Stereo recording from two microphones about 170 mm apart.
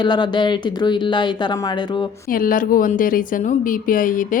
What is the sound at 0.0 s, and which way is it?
Speech, 25° left (ahead or behind).